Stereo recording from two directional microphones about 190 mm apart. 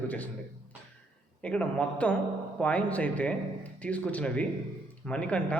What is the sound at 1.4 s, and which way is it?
A man's voice, 5° left (ahead or behind).